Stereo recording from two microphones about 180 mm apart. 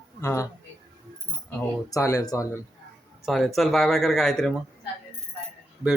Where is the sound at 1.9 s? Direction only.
15° left (ahead or behind).